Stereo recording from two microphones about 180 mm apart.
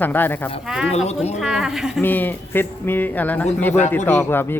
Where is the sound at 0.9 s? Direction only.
35° left (ahead or behind).